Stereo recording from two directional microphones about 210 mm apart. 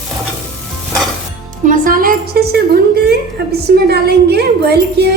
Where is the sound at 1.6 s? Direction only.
40° right (ahead or behind).